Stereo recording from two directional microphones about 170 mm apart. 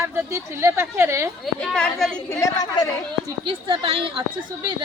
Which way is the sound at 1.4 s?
5° left (ahead or behind).